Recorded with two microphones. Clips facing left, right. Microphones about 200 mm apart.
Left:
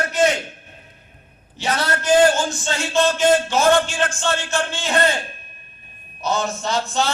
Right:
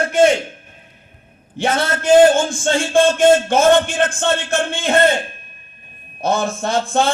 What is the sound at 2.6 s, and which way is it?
A man's voice, 50° right (ahead or behind).